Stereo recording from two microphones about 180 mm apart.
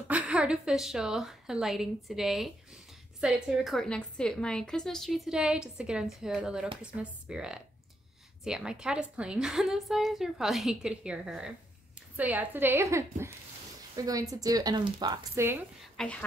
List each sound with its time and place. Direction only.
0.1 s a woman's voice: 5° right (ahead or behind)
16.0 s a woman's voice: 5° left (ahead or behind)